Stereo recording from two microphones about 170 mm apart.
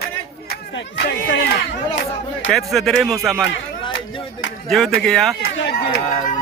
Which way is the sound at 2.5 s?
Centre (ahead or behind).